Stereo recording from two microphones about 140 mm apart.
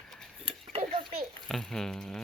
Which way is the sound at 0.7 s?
45° right (ahead or behind).